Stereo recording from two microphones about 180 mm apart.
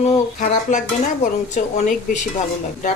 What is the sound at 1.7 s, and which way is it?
Speech, 40° left (ahead or behind).